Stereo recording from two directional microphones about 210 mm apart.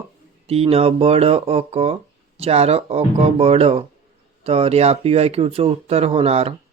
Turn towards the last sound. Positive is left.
turn(degrees=-30)  # may be behind; listen again after turning